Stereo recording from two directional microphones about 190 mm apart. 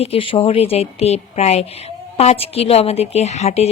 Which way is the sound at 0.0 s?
30° left (ahead or behind).